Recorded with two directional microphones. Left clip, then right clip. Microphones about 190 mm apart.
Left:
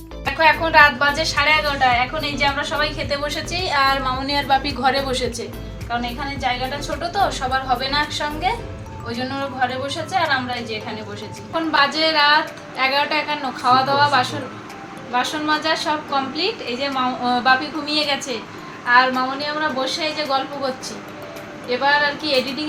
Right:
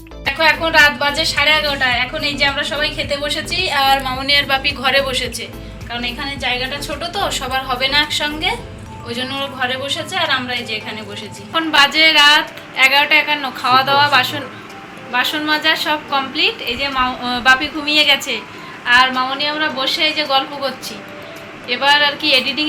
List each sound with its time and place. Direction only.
0.3 s a woman's voice: 10° right (ahead or behind)
2.6 s a woman's voice: 15° right (ahead or behind)
4.0 s speech: 15° left (ahead or behind)
4.6 s speech: 30° left (ahead or behind)
6.4 s a woman's voice: 20° right (ahead or behind)
11.5 s a woman's voice: 5° right (ahead or behind)
18.9 s a woman's voice: 25° right (ahead or behind)
21.7 s a woman's voice: 20° right (ahead or behind)